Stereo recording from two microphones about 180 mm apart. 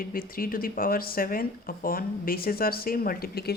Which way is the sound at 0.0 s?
55° left (ahead or behind).